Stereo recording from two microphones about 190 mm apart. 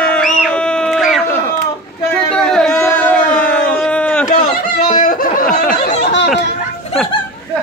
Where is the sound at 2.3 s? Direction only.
5° left (ahead or behind).